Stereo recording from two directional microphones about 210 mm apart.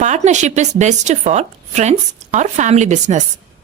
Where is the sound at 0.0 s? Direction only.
35° right (ahead or behind).